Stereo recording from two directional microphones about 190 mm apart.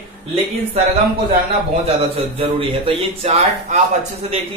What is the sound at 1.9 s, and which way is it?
A man's voice, 30° right (ahead or behind).